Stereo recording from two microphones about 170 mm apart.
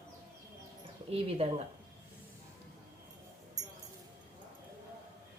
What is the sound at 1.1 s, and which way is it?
Speech, 35° right (ahead or behind).